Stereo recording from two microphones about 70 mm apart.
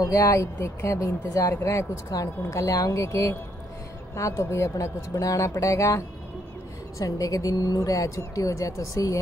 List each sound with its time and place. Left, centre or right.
0.0 s speech: left
2.1 s speech: left